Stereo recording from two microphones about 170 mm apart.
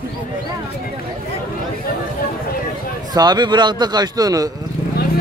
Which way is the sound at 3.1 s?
25° right (ahead or behind).